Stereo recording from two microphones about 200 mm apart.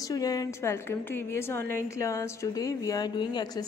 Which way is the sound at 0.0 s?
20° left (ahead or behind).